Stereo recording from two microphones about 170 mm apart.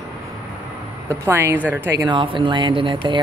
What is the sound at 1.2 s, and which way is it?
Speech, 15° right (ahead or behind).